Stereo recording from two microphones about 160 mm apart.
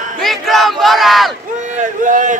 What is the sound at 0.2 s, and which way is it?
Battle cry, centre (ahead or behind).